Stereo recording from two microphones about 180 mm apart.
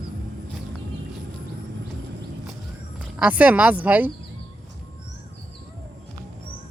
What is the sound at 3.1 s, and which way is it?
Speech, 5° right (ahead or behind).